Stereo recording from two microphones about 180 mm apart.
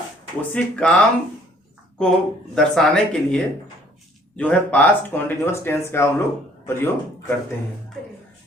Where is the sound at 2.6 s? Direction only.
Centre (ahead or behind).